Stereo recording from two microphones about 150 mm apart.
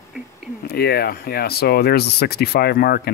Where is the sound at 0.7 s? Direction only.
90° left.